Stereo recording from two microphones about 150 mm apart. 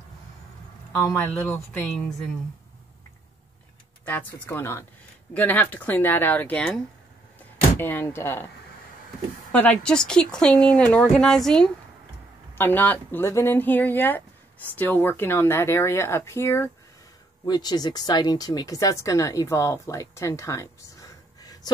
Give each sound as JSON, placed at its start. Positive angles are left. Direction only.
{"t": 1.1, "sound": "speech", "side_deg": 5}
{"t": 4.0, "sound": "speech", "side_deg": 15}
{"t": 9.5, "sound": "speech", "side_deg": 10}
{"t": 17.5, "sound": "speech", "side_deg": 25}